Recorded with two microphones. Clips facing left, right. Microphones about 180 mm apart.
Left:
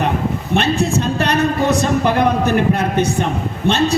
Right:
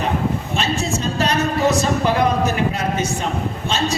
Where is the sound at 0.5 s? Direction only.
60° left (ahead or behind).